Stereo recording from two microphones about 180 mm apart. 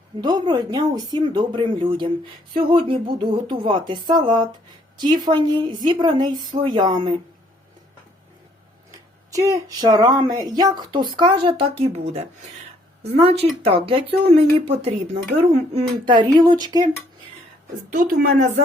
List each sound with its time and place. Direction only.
0.2 s speech: 25° right (ahead or behind)
9.3 s speech: 20° right (ahead or behind)
17.9 s a woman's voice: 50° right (ahead or behind)